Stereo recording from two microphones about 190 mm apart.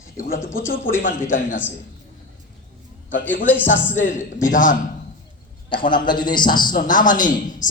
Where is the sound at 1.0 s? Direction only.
45° left (ahead or behind).